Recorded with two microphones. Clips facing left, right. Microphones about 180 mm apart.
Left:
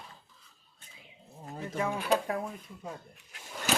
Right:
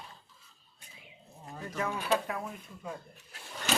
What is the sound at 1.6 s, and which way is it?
Speech, 25° left (ahead or behind).